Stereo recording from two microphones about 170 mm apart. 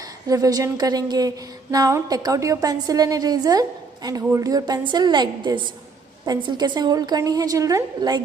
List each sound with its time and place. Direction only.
0.3 s a woman's voice: 20° right (ahead or behind)